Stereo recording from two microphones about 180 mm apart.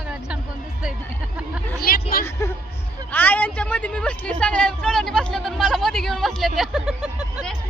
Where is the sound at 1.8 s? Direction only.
55° left (ahead or behind).